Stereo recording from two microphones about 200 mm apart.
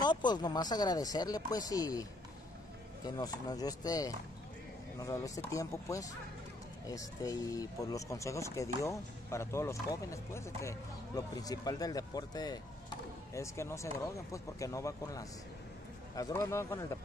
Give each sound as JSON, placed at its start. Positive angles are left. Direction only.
{"t": 0.0, "sound": "speech", "side_deg": 20}
{"t": 3.2, "sound": "speech", "side_deg": 20}